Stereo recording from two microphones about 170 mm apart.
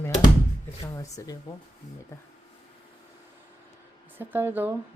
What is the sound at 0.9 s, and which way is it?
Speech, 20° left (ahead or behind).